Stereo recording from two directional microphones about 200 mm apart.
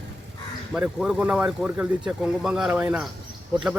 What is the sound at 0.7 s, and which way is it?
Speech, centre (ahead or behind).